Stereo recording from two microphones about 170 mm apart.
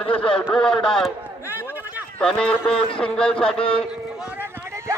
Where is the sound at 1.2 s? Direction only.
10° right (ahead or behind).